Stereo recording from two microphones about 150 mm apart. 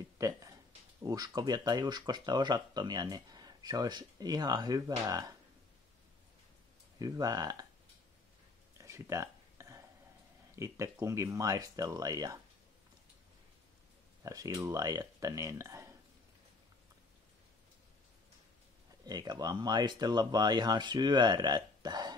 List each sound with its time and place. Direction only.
0.2 s speech: 20° right (ahead or behind)
7.0 s speech: 25° right (ahead or behind)
8.8 s a sound: 20° right (ahead or behind)
10.5 s speech: 20° right (ahead or behind)
14.2 s speech: 20° right (ahead or behind)
19.0 s speech: 25° right (ahead or behind)